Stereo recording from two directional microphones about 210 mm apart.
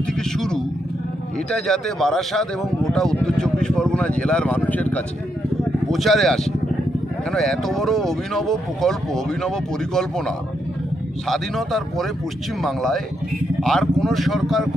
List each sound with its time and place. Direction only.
0.2 s vehicle: 5° left (ahead or behind)
1.5 s speech: centre (ahead or behind)